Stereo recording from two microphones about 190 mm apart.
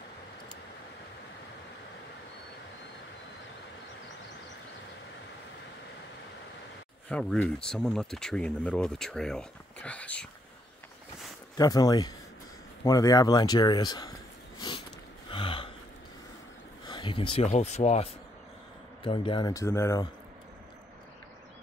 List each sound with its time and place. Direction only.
7.1 s speech: 5° left (ahead or behind)
11.5 s speech: 20° left (ahead or behind)
15.3 s gasp: 30° left (ahead or behind)
16.8 s speech: 25° left (ahead or behind)